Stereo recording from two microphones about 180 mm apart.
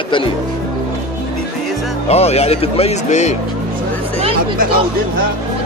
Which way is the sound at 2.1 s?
35° left (ahead or behind).